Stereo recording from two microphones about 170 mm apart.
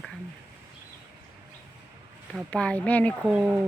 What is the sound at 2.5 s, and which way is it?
Speech, 5° left (ahead or behind).